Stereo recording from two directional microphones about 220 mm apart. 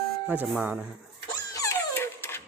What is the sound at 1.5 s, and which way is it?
Dog, 15° left (ahead or behind).